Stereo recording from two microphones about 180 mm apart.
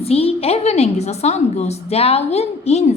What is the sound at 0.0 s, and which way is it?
A woman's voice, 35° left (ahead or behind).